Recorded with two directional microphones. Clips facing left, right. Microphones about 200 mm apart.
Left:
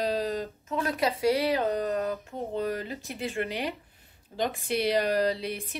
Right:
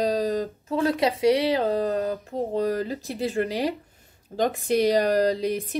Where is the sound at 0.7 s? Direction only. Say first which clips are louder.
Right 5 dB; 30° right (ahead or behind).